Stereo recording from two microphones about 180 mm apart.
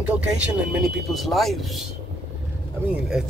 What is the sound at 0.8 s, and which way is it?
Speech, centre (ahead or behind).